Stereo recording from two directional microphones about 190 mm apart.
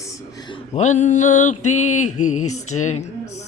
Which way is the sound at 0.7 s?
40° left (ahead or behind).